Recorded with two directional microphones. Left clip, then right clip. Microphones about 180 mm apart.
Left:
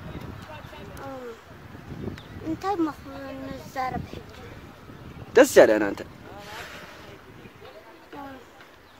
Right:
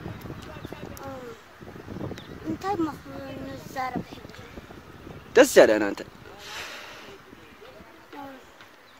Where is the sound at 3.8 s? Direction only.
Centre (ahead or behind).